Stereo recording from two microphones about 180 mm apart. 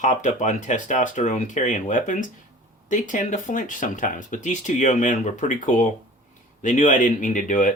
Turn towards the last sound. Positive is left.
turn(degrees=45)  # may be behind; listen again after turning